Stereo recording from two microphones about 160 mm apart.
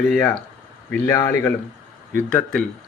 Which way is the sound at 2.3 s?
5° left (ahead or behind).